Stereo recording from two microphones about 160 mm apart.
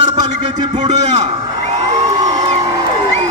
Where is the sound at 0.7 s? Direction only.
45° right (ahead or behind).